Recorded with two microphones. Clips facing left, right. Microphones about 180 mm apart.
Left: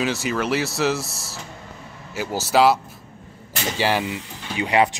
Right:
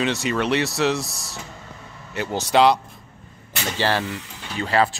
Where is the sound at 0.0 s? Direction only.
Centre (ahead or behind).